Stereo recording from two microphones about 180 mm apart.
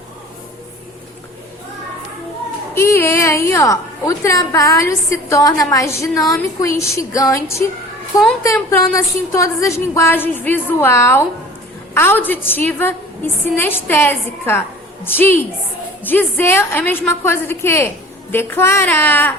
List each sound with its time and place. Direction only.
2.7 s a woman's voice: 15° left (ahead or behind)